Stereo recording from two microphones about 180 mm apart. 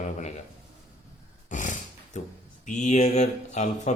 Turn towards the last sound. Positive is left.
turn(degrees=40)  # may be behind; listen again after turning